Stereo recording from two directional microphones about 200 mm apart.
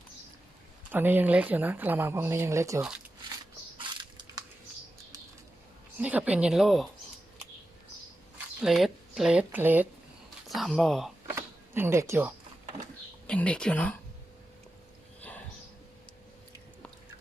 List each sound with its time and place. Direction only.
0.9 s speech: 10° right (ahead or behind)
3.8 s crushing: 25° right (ahead or behind)
6.0 s speech: 5° right (ahead or behind)
8.6 s speech: centre (ahead or behind)
11.3 s a sound: 10° right (ahead or behind)
13.2 s speech: 5° left (ahead or behind)